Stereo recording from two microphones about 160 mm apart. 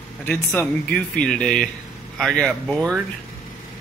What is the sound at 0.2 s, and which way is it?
Speech, 10° left (ahead or behind).